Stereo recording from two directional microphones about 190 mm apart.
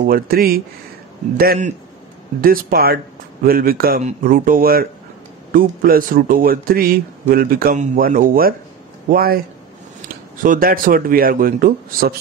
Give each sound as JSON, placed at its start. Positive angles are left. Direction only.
{"t": 0.0, "sound": "speech", "side_deg": -50}
{"t": 2.4, "sound": "speech", "side_deg": -50}